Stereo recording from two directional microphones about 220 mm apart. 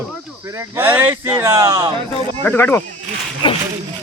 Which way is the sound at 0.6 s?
10° right (ahead or behind).